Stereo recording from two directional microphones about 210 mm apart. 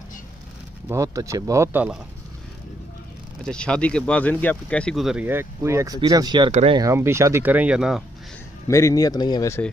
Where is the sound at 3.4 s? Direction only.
5° left (ahead or behind); by 6.8 s 25° right (ahead or behind).